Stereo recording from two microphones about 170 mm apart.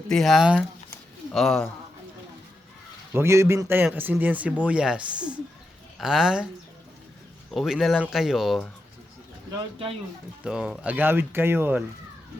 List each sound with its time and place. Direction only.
0.1 s speech: centre (ahead or behind)
3.1 s speech: 15° right (ahead or behind)
7.5 s speech: centre (ahead or behind)
10.4 s speech: 5° right (ahead or behind)